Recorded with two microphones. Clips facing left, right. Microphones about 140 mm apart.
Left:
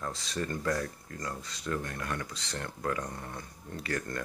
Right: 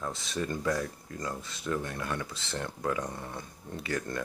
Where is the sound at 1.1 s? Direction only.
25° right (ahead or behind).